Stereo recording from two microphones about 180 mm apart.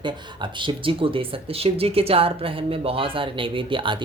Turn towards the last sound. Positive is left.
turn(degrees=-25)  # may be behind; listen again after turning